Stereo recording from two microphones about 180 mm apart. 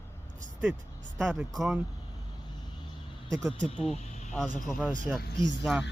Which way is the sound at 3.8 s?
Centre (ahead or behind).